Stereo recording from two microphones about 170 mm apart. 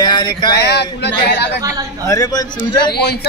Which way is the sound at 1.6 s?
20° right (ahead or behind).